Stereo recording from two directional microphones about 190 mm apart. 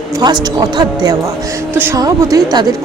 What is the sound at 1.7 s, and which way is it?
A woman's voice, 15° right (ahead or behind).